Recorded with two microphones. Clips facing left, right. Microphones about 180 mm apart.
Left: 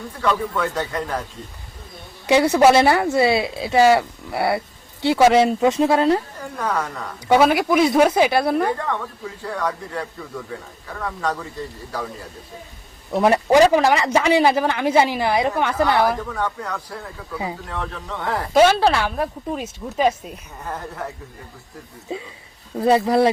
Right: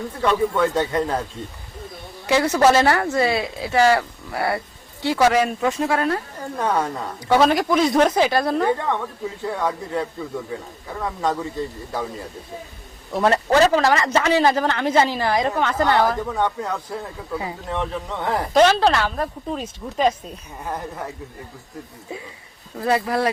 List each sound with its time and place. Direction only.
0.6 s speech: 25° right (ahead or behind)
2.2 s speech: 15° left (ahead or behind)
6.6 s speech: 30° right (ahead or behind)
7.3 s speech: 5° left (ahead or behind)
8.6 s speech: 20° right (ahead or behind)
13.1 s speech: 15° left (ahead or behind)
16.1 s speech: 20° right (ahead or behind)
18.5 s speech: 10° left (ahead or behind)
20.7 s a woman's voice: 15° right (ahead or behind)
22.8 s speech: 25° left (ahead or behind)